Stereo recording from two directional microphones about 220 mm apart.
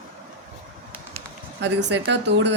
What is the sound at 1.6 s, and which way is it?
Speech, 50° right (ahead or behind).